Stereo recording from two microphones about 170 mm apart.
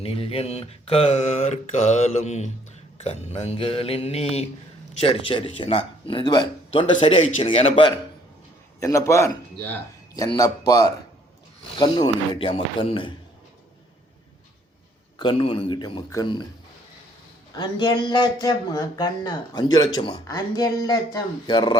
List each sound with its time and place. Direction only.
0.0 s speech: 35° left (ahead or behind)
8.8 s a man's voice: 20° left (ahead or behind)
10.7 s speech: 20° left (ahead or behind)
15.2 s speech: 30° left (ahead or behind)
17.5 s speech: 25° left (ahead or behind)